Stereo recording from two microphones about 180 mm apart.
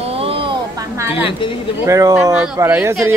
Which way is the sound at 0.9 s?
10° right (ahead or behind).